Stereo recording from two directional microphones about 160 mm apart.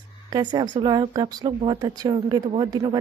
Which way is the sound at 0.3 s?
30° right (ahead or behind).